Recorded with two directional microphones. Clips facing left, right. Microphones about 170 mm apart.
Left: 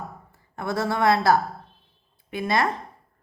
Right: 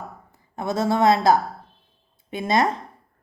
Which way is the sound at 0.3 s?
20° right (ahead or behind).